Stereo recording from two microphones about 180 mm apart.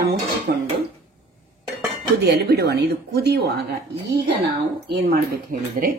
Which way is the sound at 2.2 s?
65° right (ahead or behind).